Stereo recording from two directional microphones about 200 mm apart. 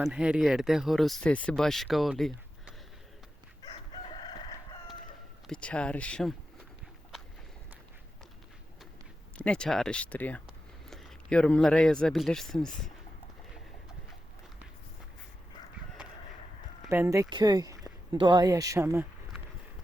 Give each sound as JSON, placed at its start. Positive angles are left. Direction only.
{"t": 0.0, "sound": "speech", "side_deg": -5}
{"t": 3.6, "sound": "chicken", "side_deg": 20}
{"t": 5.5, "sound": "speech", "side_deg": 5}
{"t": 9.4, "sound": "speech", "side_deg": 5}
{"t": 16.8, "sound": "speech", "side_deg": -10}